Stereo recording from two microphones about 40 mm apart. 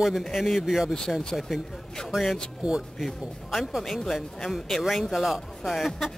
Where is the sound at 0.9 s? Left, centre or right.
Centre.